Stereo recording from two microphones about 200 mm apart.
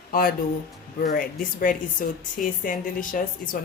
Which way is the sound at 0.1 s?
45° left (ahead or behind).